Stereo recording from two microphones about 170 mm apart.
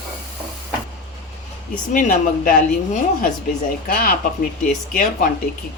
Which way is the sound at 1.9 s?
50° left (ahead or behind).